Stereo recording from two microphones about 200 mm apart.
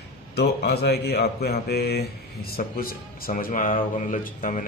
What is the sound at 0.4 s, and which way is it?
Speech, 55° left (ahead or behind).